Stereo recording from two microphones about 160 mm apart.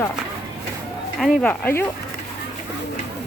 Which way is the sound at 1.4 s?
10° left (ahead or behind).